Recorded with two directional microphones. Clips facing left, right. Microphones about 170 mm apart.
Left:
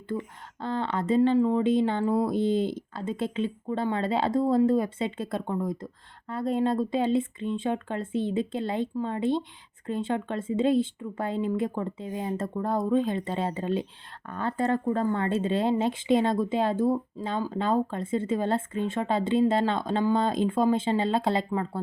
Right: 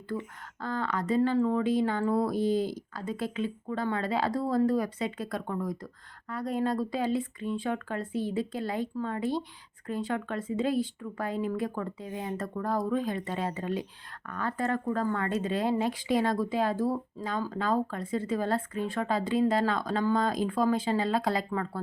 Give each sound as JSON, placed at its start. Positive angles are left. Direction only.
{"t": 0.6, "sound": "speech", "side_deg": 25}